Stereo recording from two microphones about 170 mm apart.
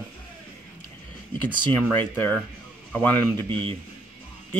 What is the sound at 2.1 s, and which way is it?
A man's voice, 15° left (ahead or behind).